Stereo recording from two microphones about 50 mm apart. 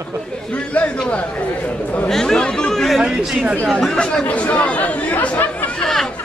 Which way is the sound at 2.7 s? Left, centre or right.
Centre.